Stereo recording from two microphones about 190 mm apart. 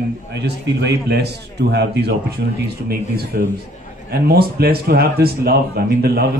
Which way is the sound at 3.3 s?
55° right (ahead or behind).